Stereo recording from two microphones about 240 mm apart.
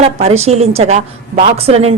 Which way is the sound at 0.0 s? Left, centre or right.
Right.